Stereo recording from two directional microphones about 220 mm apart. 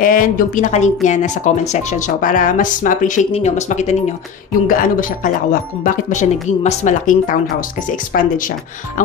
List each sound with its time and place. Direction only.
0.0 s speech: 35° left (ahead or behind)